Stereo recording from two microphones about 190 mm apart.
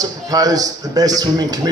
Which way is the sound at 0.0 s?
20° right (ahead or behind).